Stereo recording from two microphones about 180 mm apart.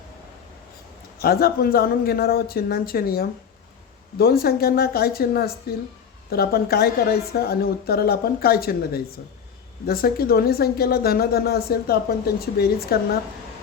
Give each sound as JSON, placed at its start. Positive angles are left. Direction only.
{"t": 1.2, "sound": "speech", "side_deg": 55}